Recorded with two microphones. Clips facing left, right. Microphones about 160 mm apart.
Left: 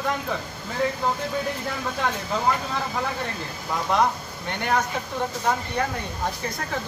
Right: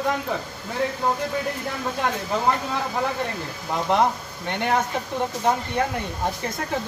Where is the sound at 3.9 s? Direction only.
20° right (ahead or behind).